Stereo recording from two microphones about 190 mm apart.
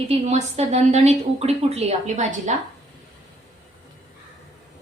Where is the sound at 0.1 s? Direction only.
35° right (ahead or behind).